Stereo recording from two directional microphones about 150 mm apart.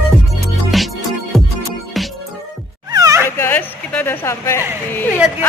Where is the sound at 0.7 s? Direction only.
Centre (ahead or behind).